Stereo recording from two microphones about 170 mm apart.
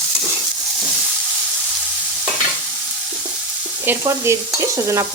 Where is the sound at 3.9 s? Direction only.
15° right (ahead or behind).